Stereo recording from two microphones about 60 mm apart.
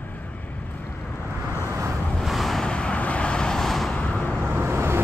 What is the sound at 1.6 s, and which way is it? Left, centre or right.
Vehicle, right.